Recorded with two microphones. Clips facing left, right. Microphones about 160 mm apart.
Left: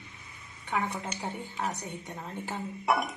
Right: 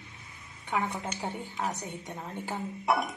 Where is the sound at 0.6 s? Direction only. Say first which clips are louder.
Right 1 dB; 15° right (ahead or behind).